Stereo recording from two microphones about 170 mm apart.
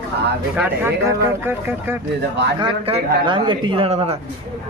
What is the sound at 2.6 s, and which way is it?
A man's voice, 35° right (ahead or behind).